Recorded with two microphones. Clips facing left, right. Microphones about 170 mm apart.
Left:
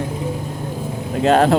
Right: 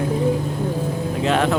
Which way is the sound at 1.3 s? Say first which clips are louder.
Left 6 dB; 35° left (ahead or behind).